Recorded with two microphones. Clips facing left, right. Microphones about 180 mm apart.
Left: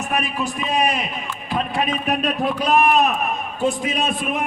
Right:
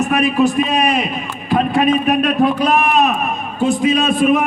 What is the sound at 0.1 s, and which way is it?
Speech, 75° right (ahead or behind).